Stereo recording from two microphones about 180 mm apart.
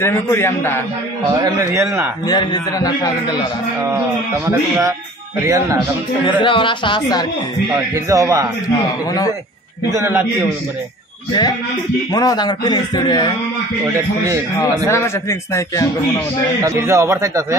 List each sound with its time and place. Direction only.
0.0 s a man's voice: 15° left (ahead or behind)
1.4 s a man's voice: 20° right (ahead or behind)
2.2 s a man's voice: 25° left (ahead or behind)
4.5 s a man's voice: 20° right (ahead or behind)
6.4 s a man's voice: 25° left (ahead or behind)
7.7 s a man's voice: 15° right (ahead or behind)
9.8 s a man's voice: 15° right (ahead or behind)
12.1 s a man's voice: 20° left (ahead or behind)
14.9 s a man's voice: 15° left (ahead or behind)
16.6 s a man's voice: 15° right (ahead or behind)